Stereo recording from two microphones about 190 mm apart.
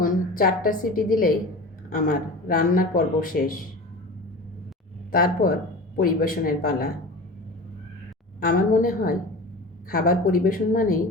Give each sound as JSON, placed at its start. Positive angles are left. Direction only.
{"t": 0.0, "sound": "a woman's voice", "side_deg": 50}
{"t": 5.1, "sound": "speech", "side_deg": 50}
{"t": 8.4, "sound": "speech", "side_deg": 45}